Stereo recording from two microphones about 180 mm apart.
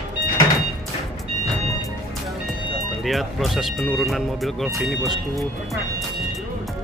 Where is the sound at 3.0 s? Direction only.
Centre (ahead or behind).